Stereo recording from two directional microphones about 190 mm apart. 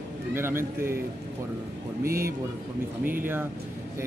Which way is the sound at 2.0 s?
50° right (ahead or behind).